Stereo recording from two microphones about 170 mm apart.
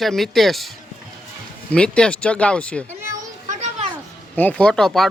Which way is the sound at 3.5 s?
40° right (ahead or behind).